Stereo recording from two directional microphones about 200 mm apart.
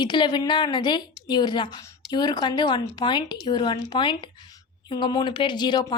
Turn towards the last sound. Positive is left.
turn(degrees=20)  # may be behind; listen again after turning